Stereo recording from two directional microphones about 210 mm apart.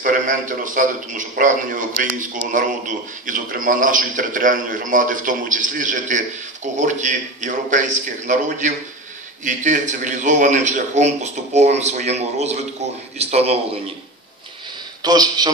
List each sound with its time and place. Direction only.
0.0 s a man's voice: 40° right (ahead or behind)
15.0 s a man's voice: 20° right (ahead or behind)